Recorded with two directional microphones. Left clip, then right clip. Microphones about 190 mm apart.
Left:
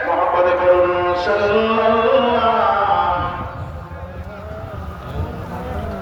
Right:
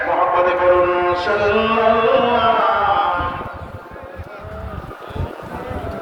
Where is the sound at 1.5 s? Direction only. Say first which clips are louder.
Right 2 dB; 15° right (ahead or behind).